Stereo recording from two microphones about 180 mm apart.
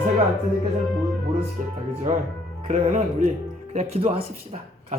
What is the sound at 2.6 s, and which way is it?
Speech, 40° right (ahead or behind).